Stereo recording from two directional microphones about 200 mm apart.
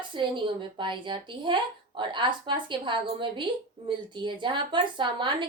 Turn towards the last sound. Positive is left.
turn(degrees=-25)  # may be behind; listen again after turning